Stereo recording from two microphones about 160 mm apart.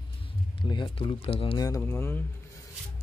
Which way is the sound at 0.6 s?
25° left (ahead or behind).